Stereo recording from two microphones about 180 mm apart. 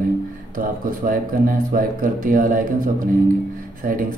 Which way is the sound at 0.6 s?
50° right (ahead or behind).